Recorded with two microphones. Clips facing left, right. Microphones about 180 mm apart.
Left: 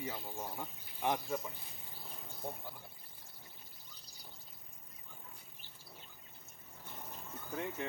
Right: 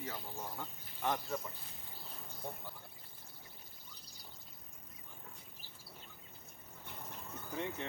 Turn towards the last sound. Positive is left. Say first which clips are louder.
# left 1 dB
turn(degrees=5)  # may be behind; listen again after turning